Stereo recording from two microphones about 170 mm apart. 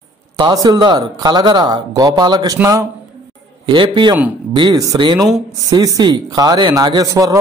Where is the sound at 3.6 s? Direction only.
30° right (ahead or behind).